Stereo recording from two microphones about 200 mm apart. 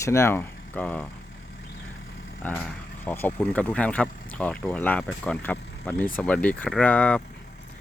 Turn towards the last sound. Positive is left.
turn(degrees=5)  # may be behind; listen again after turning